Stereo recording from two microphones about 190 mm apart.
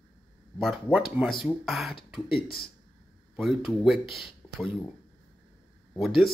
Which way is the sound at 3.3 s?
Centre (ahead or behind).